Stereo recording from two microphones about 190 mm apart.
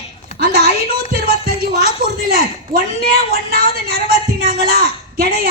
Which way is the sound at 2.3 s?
50° right (ahead or behind).